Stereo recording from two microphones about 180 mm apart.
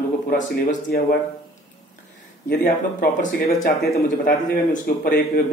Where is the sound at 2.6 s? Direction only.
45° left (ahead or behind).